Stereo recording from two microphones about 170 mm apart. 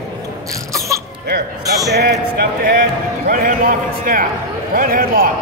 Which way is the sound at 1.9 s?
70° right (ahead or behind).